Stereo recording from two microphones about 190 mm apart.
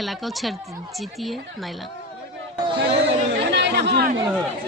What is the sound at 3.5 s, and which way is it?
Chatter, 65° right (ahead or behind).